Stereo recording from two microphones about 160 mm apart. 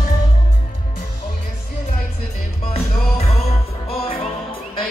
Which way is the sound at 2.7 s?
40° left (ahead or behind).